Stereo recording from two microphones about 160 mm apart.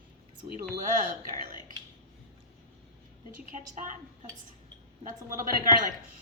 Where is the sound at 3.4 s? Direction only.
55° right (ahead or behind).